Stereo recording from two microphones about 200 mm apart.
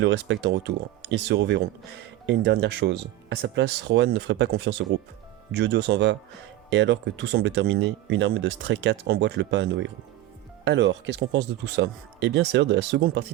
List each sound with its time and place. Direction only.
0.0 s speech: 65° right (ahead or behind)